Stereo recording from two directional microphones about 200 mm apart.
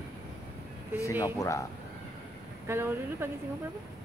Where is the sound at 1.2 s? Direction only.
15° left (ahead or behind).